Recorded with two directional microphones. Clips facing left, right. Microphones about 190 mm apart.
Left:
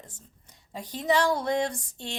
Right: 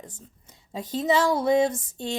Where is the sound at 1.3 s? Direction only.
20° right (ahead or behind).